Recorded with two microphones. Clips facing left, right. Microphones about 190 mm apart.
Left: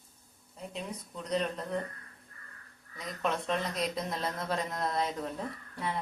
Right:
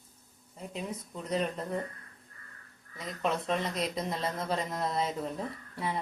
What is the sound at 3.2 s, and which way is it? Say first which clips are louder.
Speech: right 1 dB; centre (ahead or behind).